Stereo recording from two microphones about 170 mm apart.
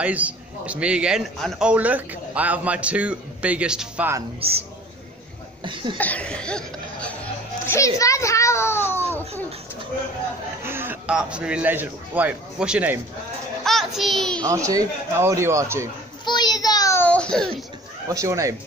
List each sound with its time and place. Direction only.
0.0 s a man's voice: 10° right (ahead or behind)
4.4 s a man's voice: 35° right (ahead or behind)
5.6 s a sound: 30° right (ahead or behind)
5.9 s laughter: 10° left (ahead or behind)
7.6 s a child's voice: 15° left (ahead or behind)
10.6 s a man's voice: 15° right (ahead or behind)
13.7 s child singing: centre (ahead or behind)
14.4 s a man's voice: 20° right (ahead or behind)
16.3 s a sound: 25° left (ahead or behind); by 17.6 s 5° left (ahead or behind)
18.0 s speech: 20° right (ahead or behind)